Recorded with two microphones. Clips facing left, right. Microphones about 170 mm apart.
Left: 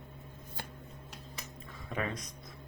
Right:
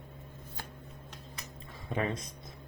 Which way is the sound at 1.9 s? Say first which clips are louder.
Right 3 dB; 25° right (ahead or behind).